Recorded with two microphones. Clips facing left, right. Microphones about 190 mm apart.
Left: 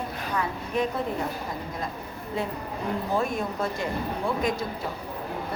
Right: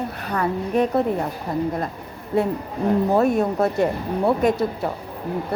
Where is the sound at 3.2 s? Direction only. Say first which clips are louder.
Right 9 dB; 65° right (ahead or behind).